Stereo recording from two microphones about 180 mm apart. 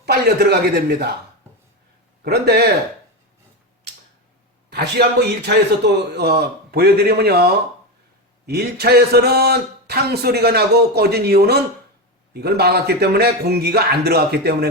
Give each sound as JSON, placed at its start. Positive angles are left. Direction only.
{"t": 0.0, "sound": "a sound", "side_deg": -65}
{"t": 0.9, "sound": "a man's voice", "side_deg": -65}
{"t": 2.2, "sound": "a man's voice", "side_deg": -65}
{"t": 4.7, "sound": "a man's voice", "side_deg": -65}